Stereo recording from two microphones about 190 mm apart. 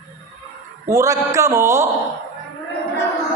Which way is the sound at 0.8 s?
15° right (ahead or behind).